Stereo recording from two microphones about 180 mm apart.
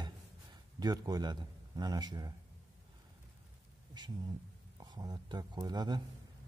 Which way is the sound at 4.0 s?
25° right (ahead or behind).